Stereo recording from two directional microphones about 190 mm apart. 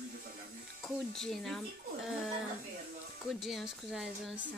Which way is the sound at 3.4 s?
Centre (ahead or behind).